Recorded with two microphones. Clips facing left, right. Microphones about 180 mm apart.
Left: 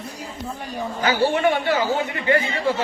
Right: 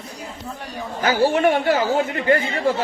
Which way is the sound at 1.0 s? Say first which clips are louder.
Right 2 dB; 45° right (ahead or behind).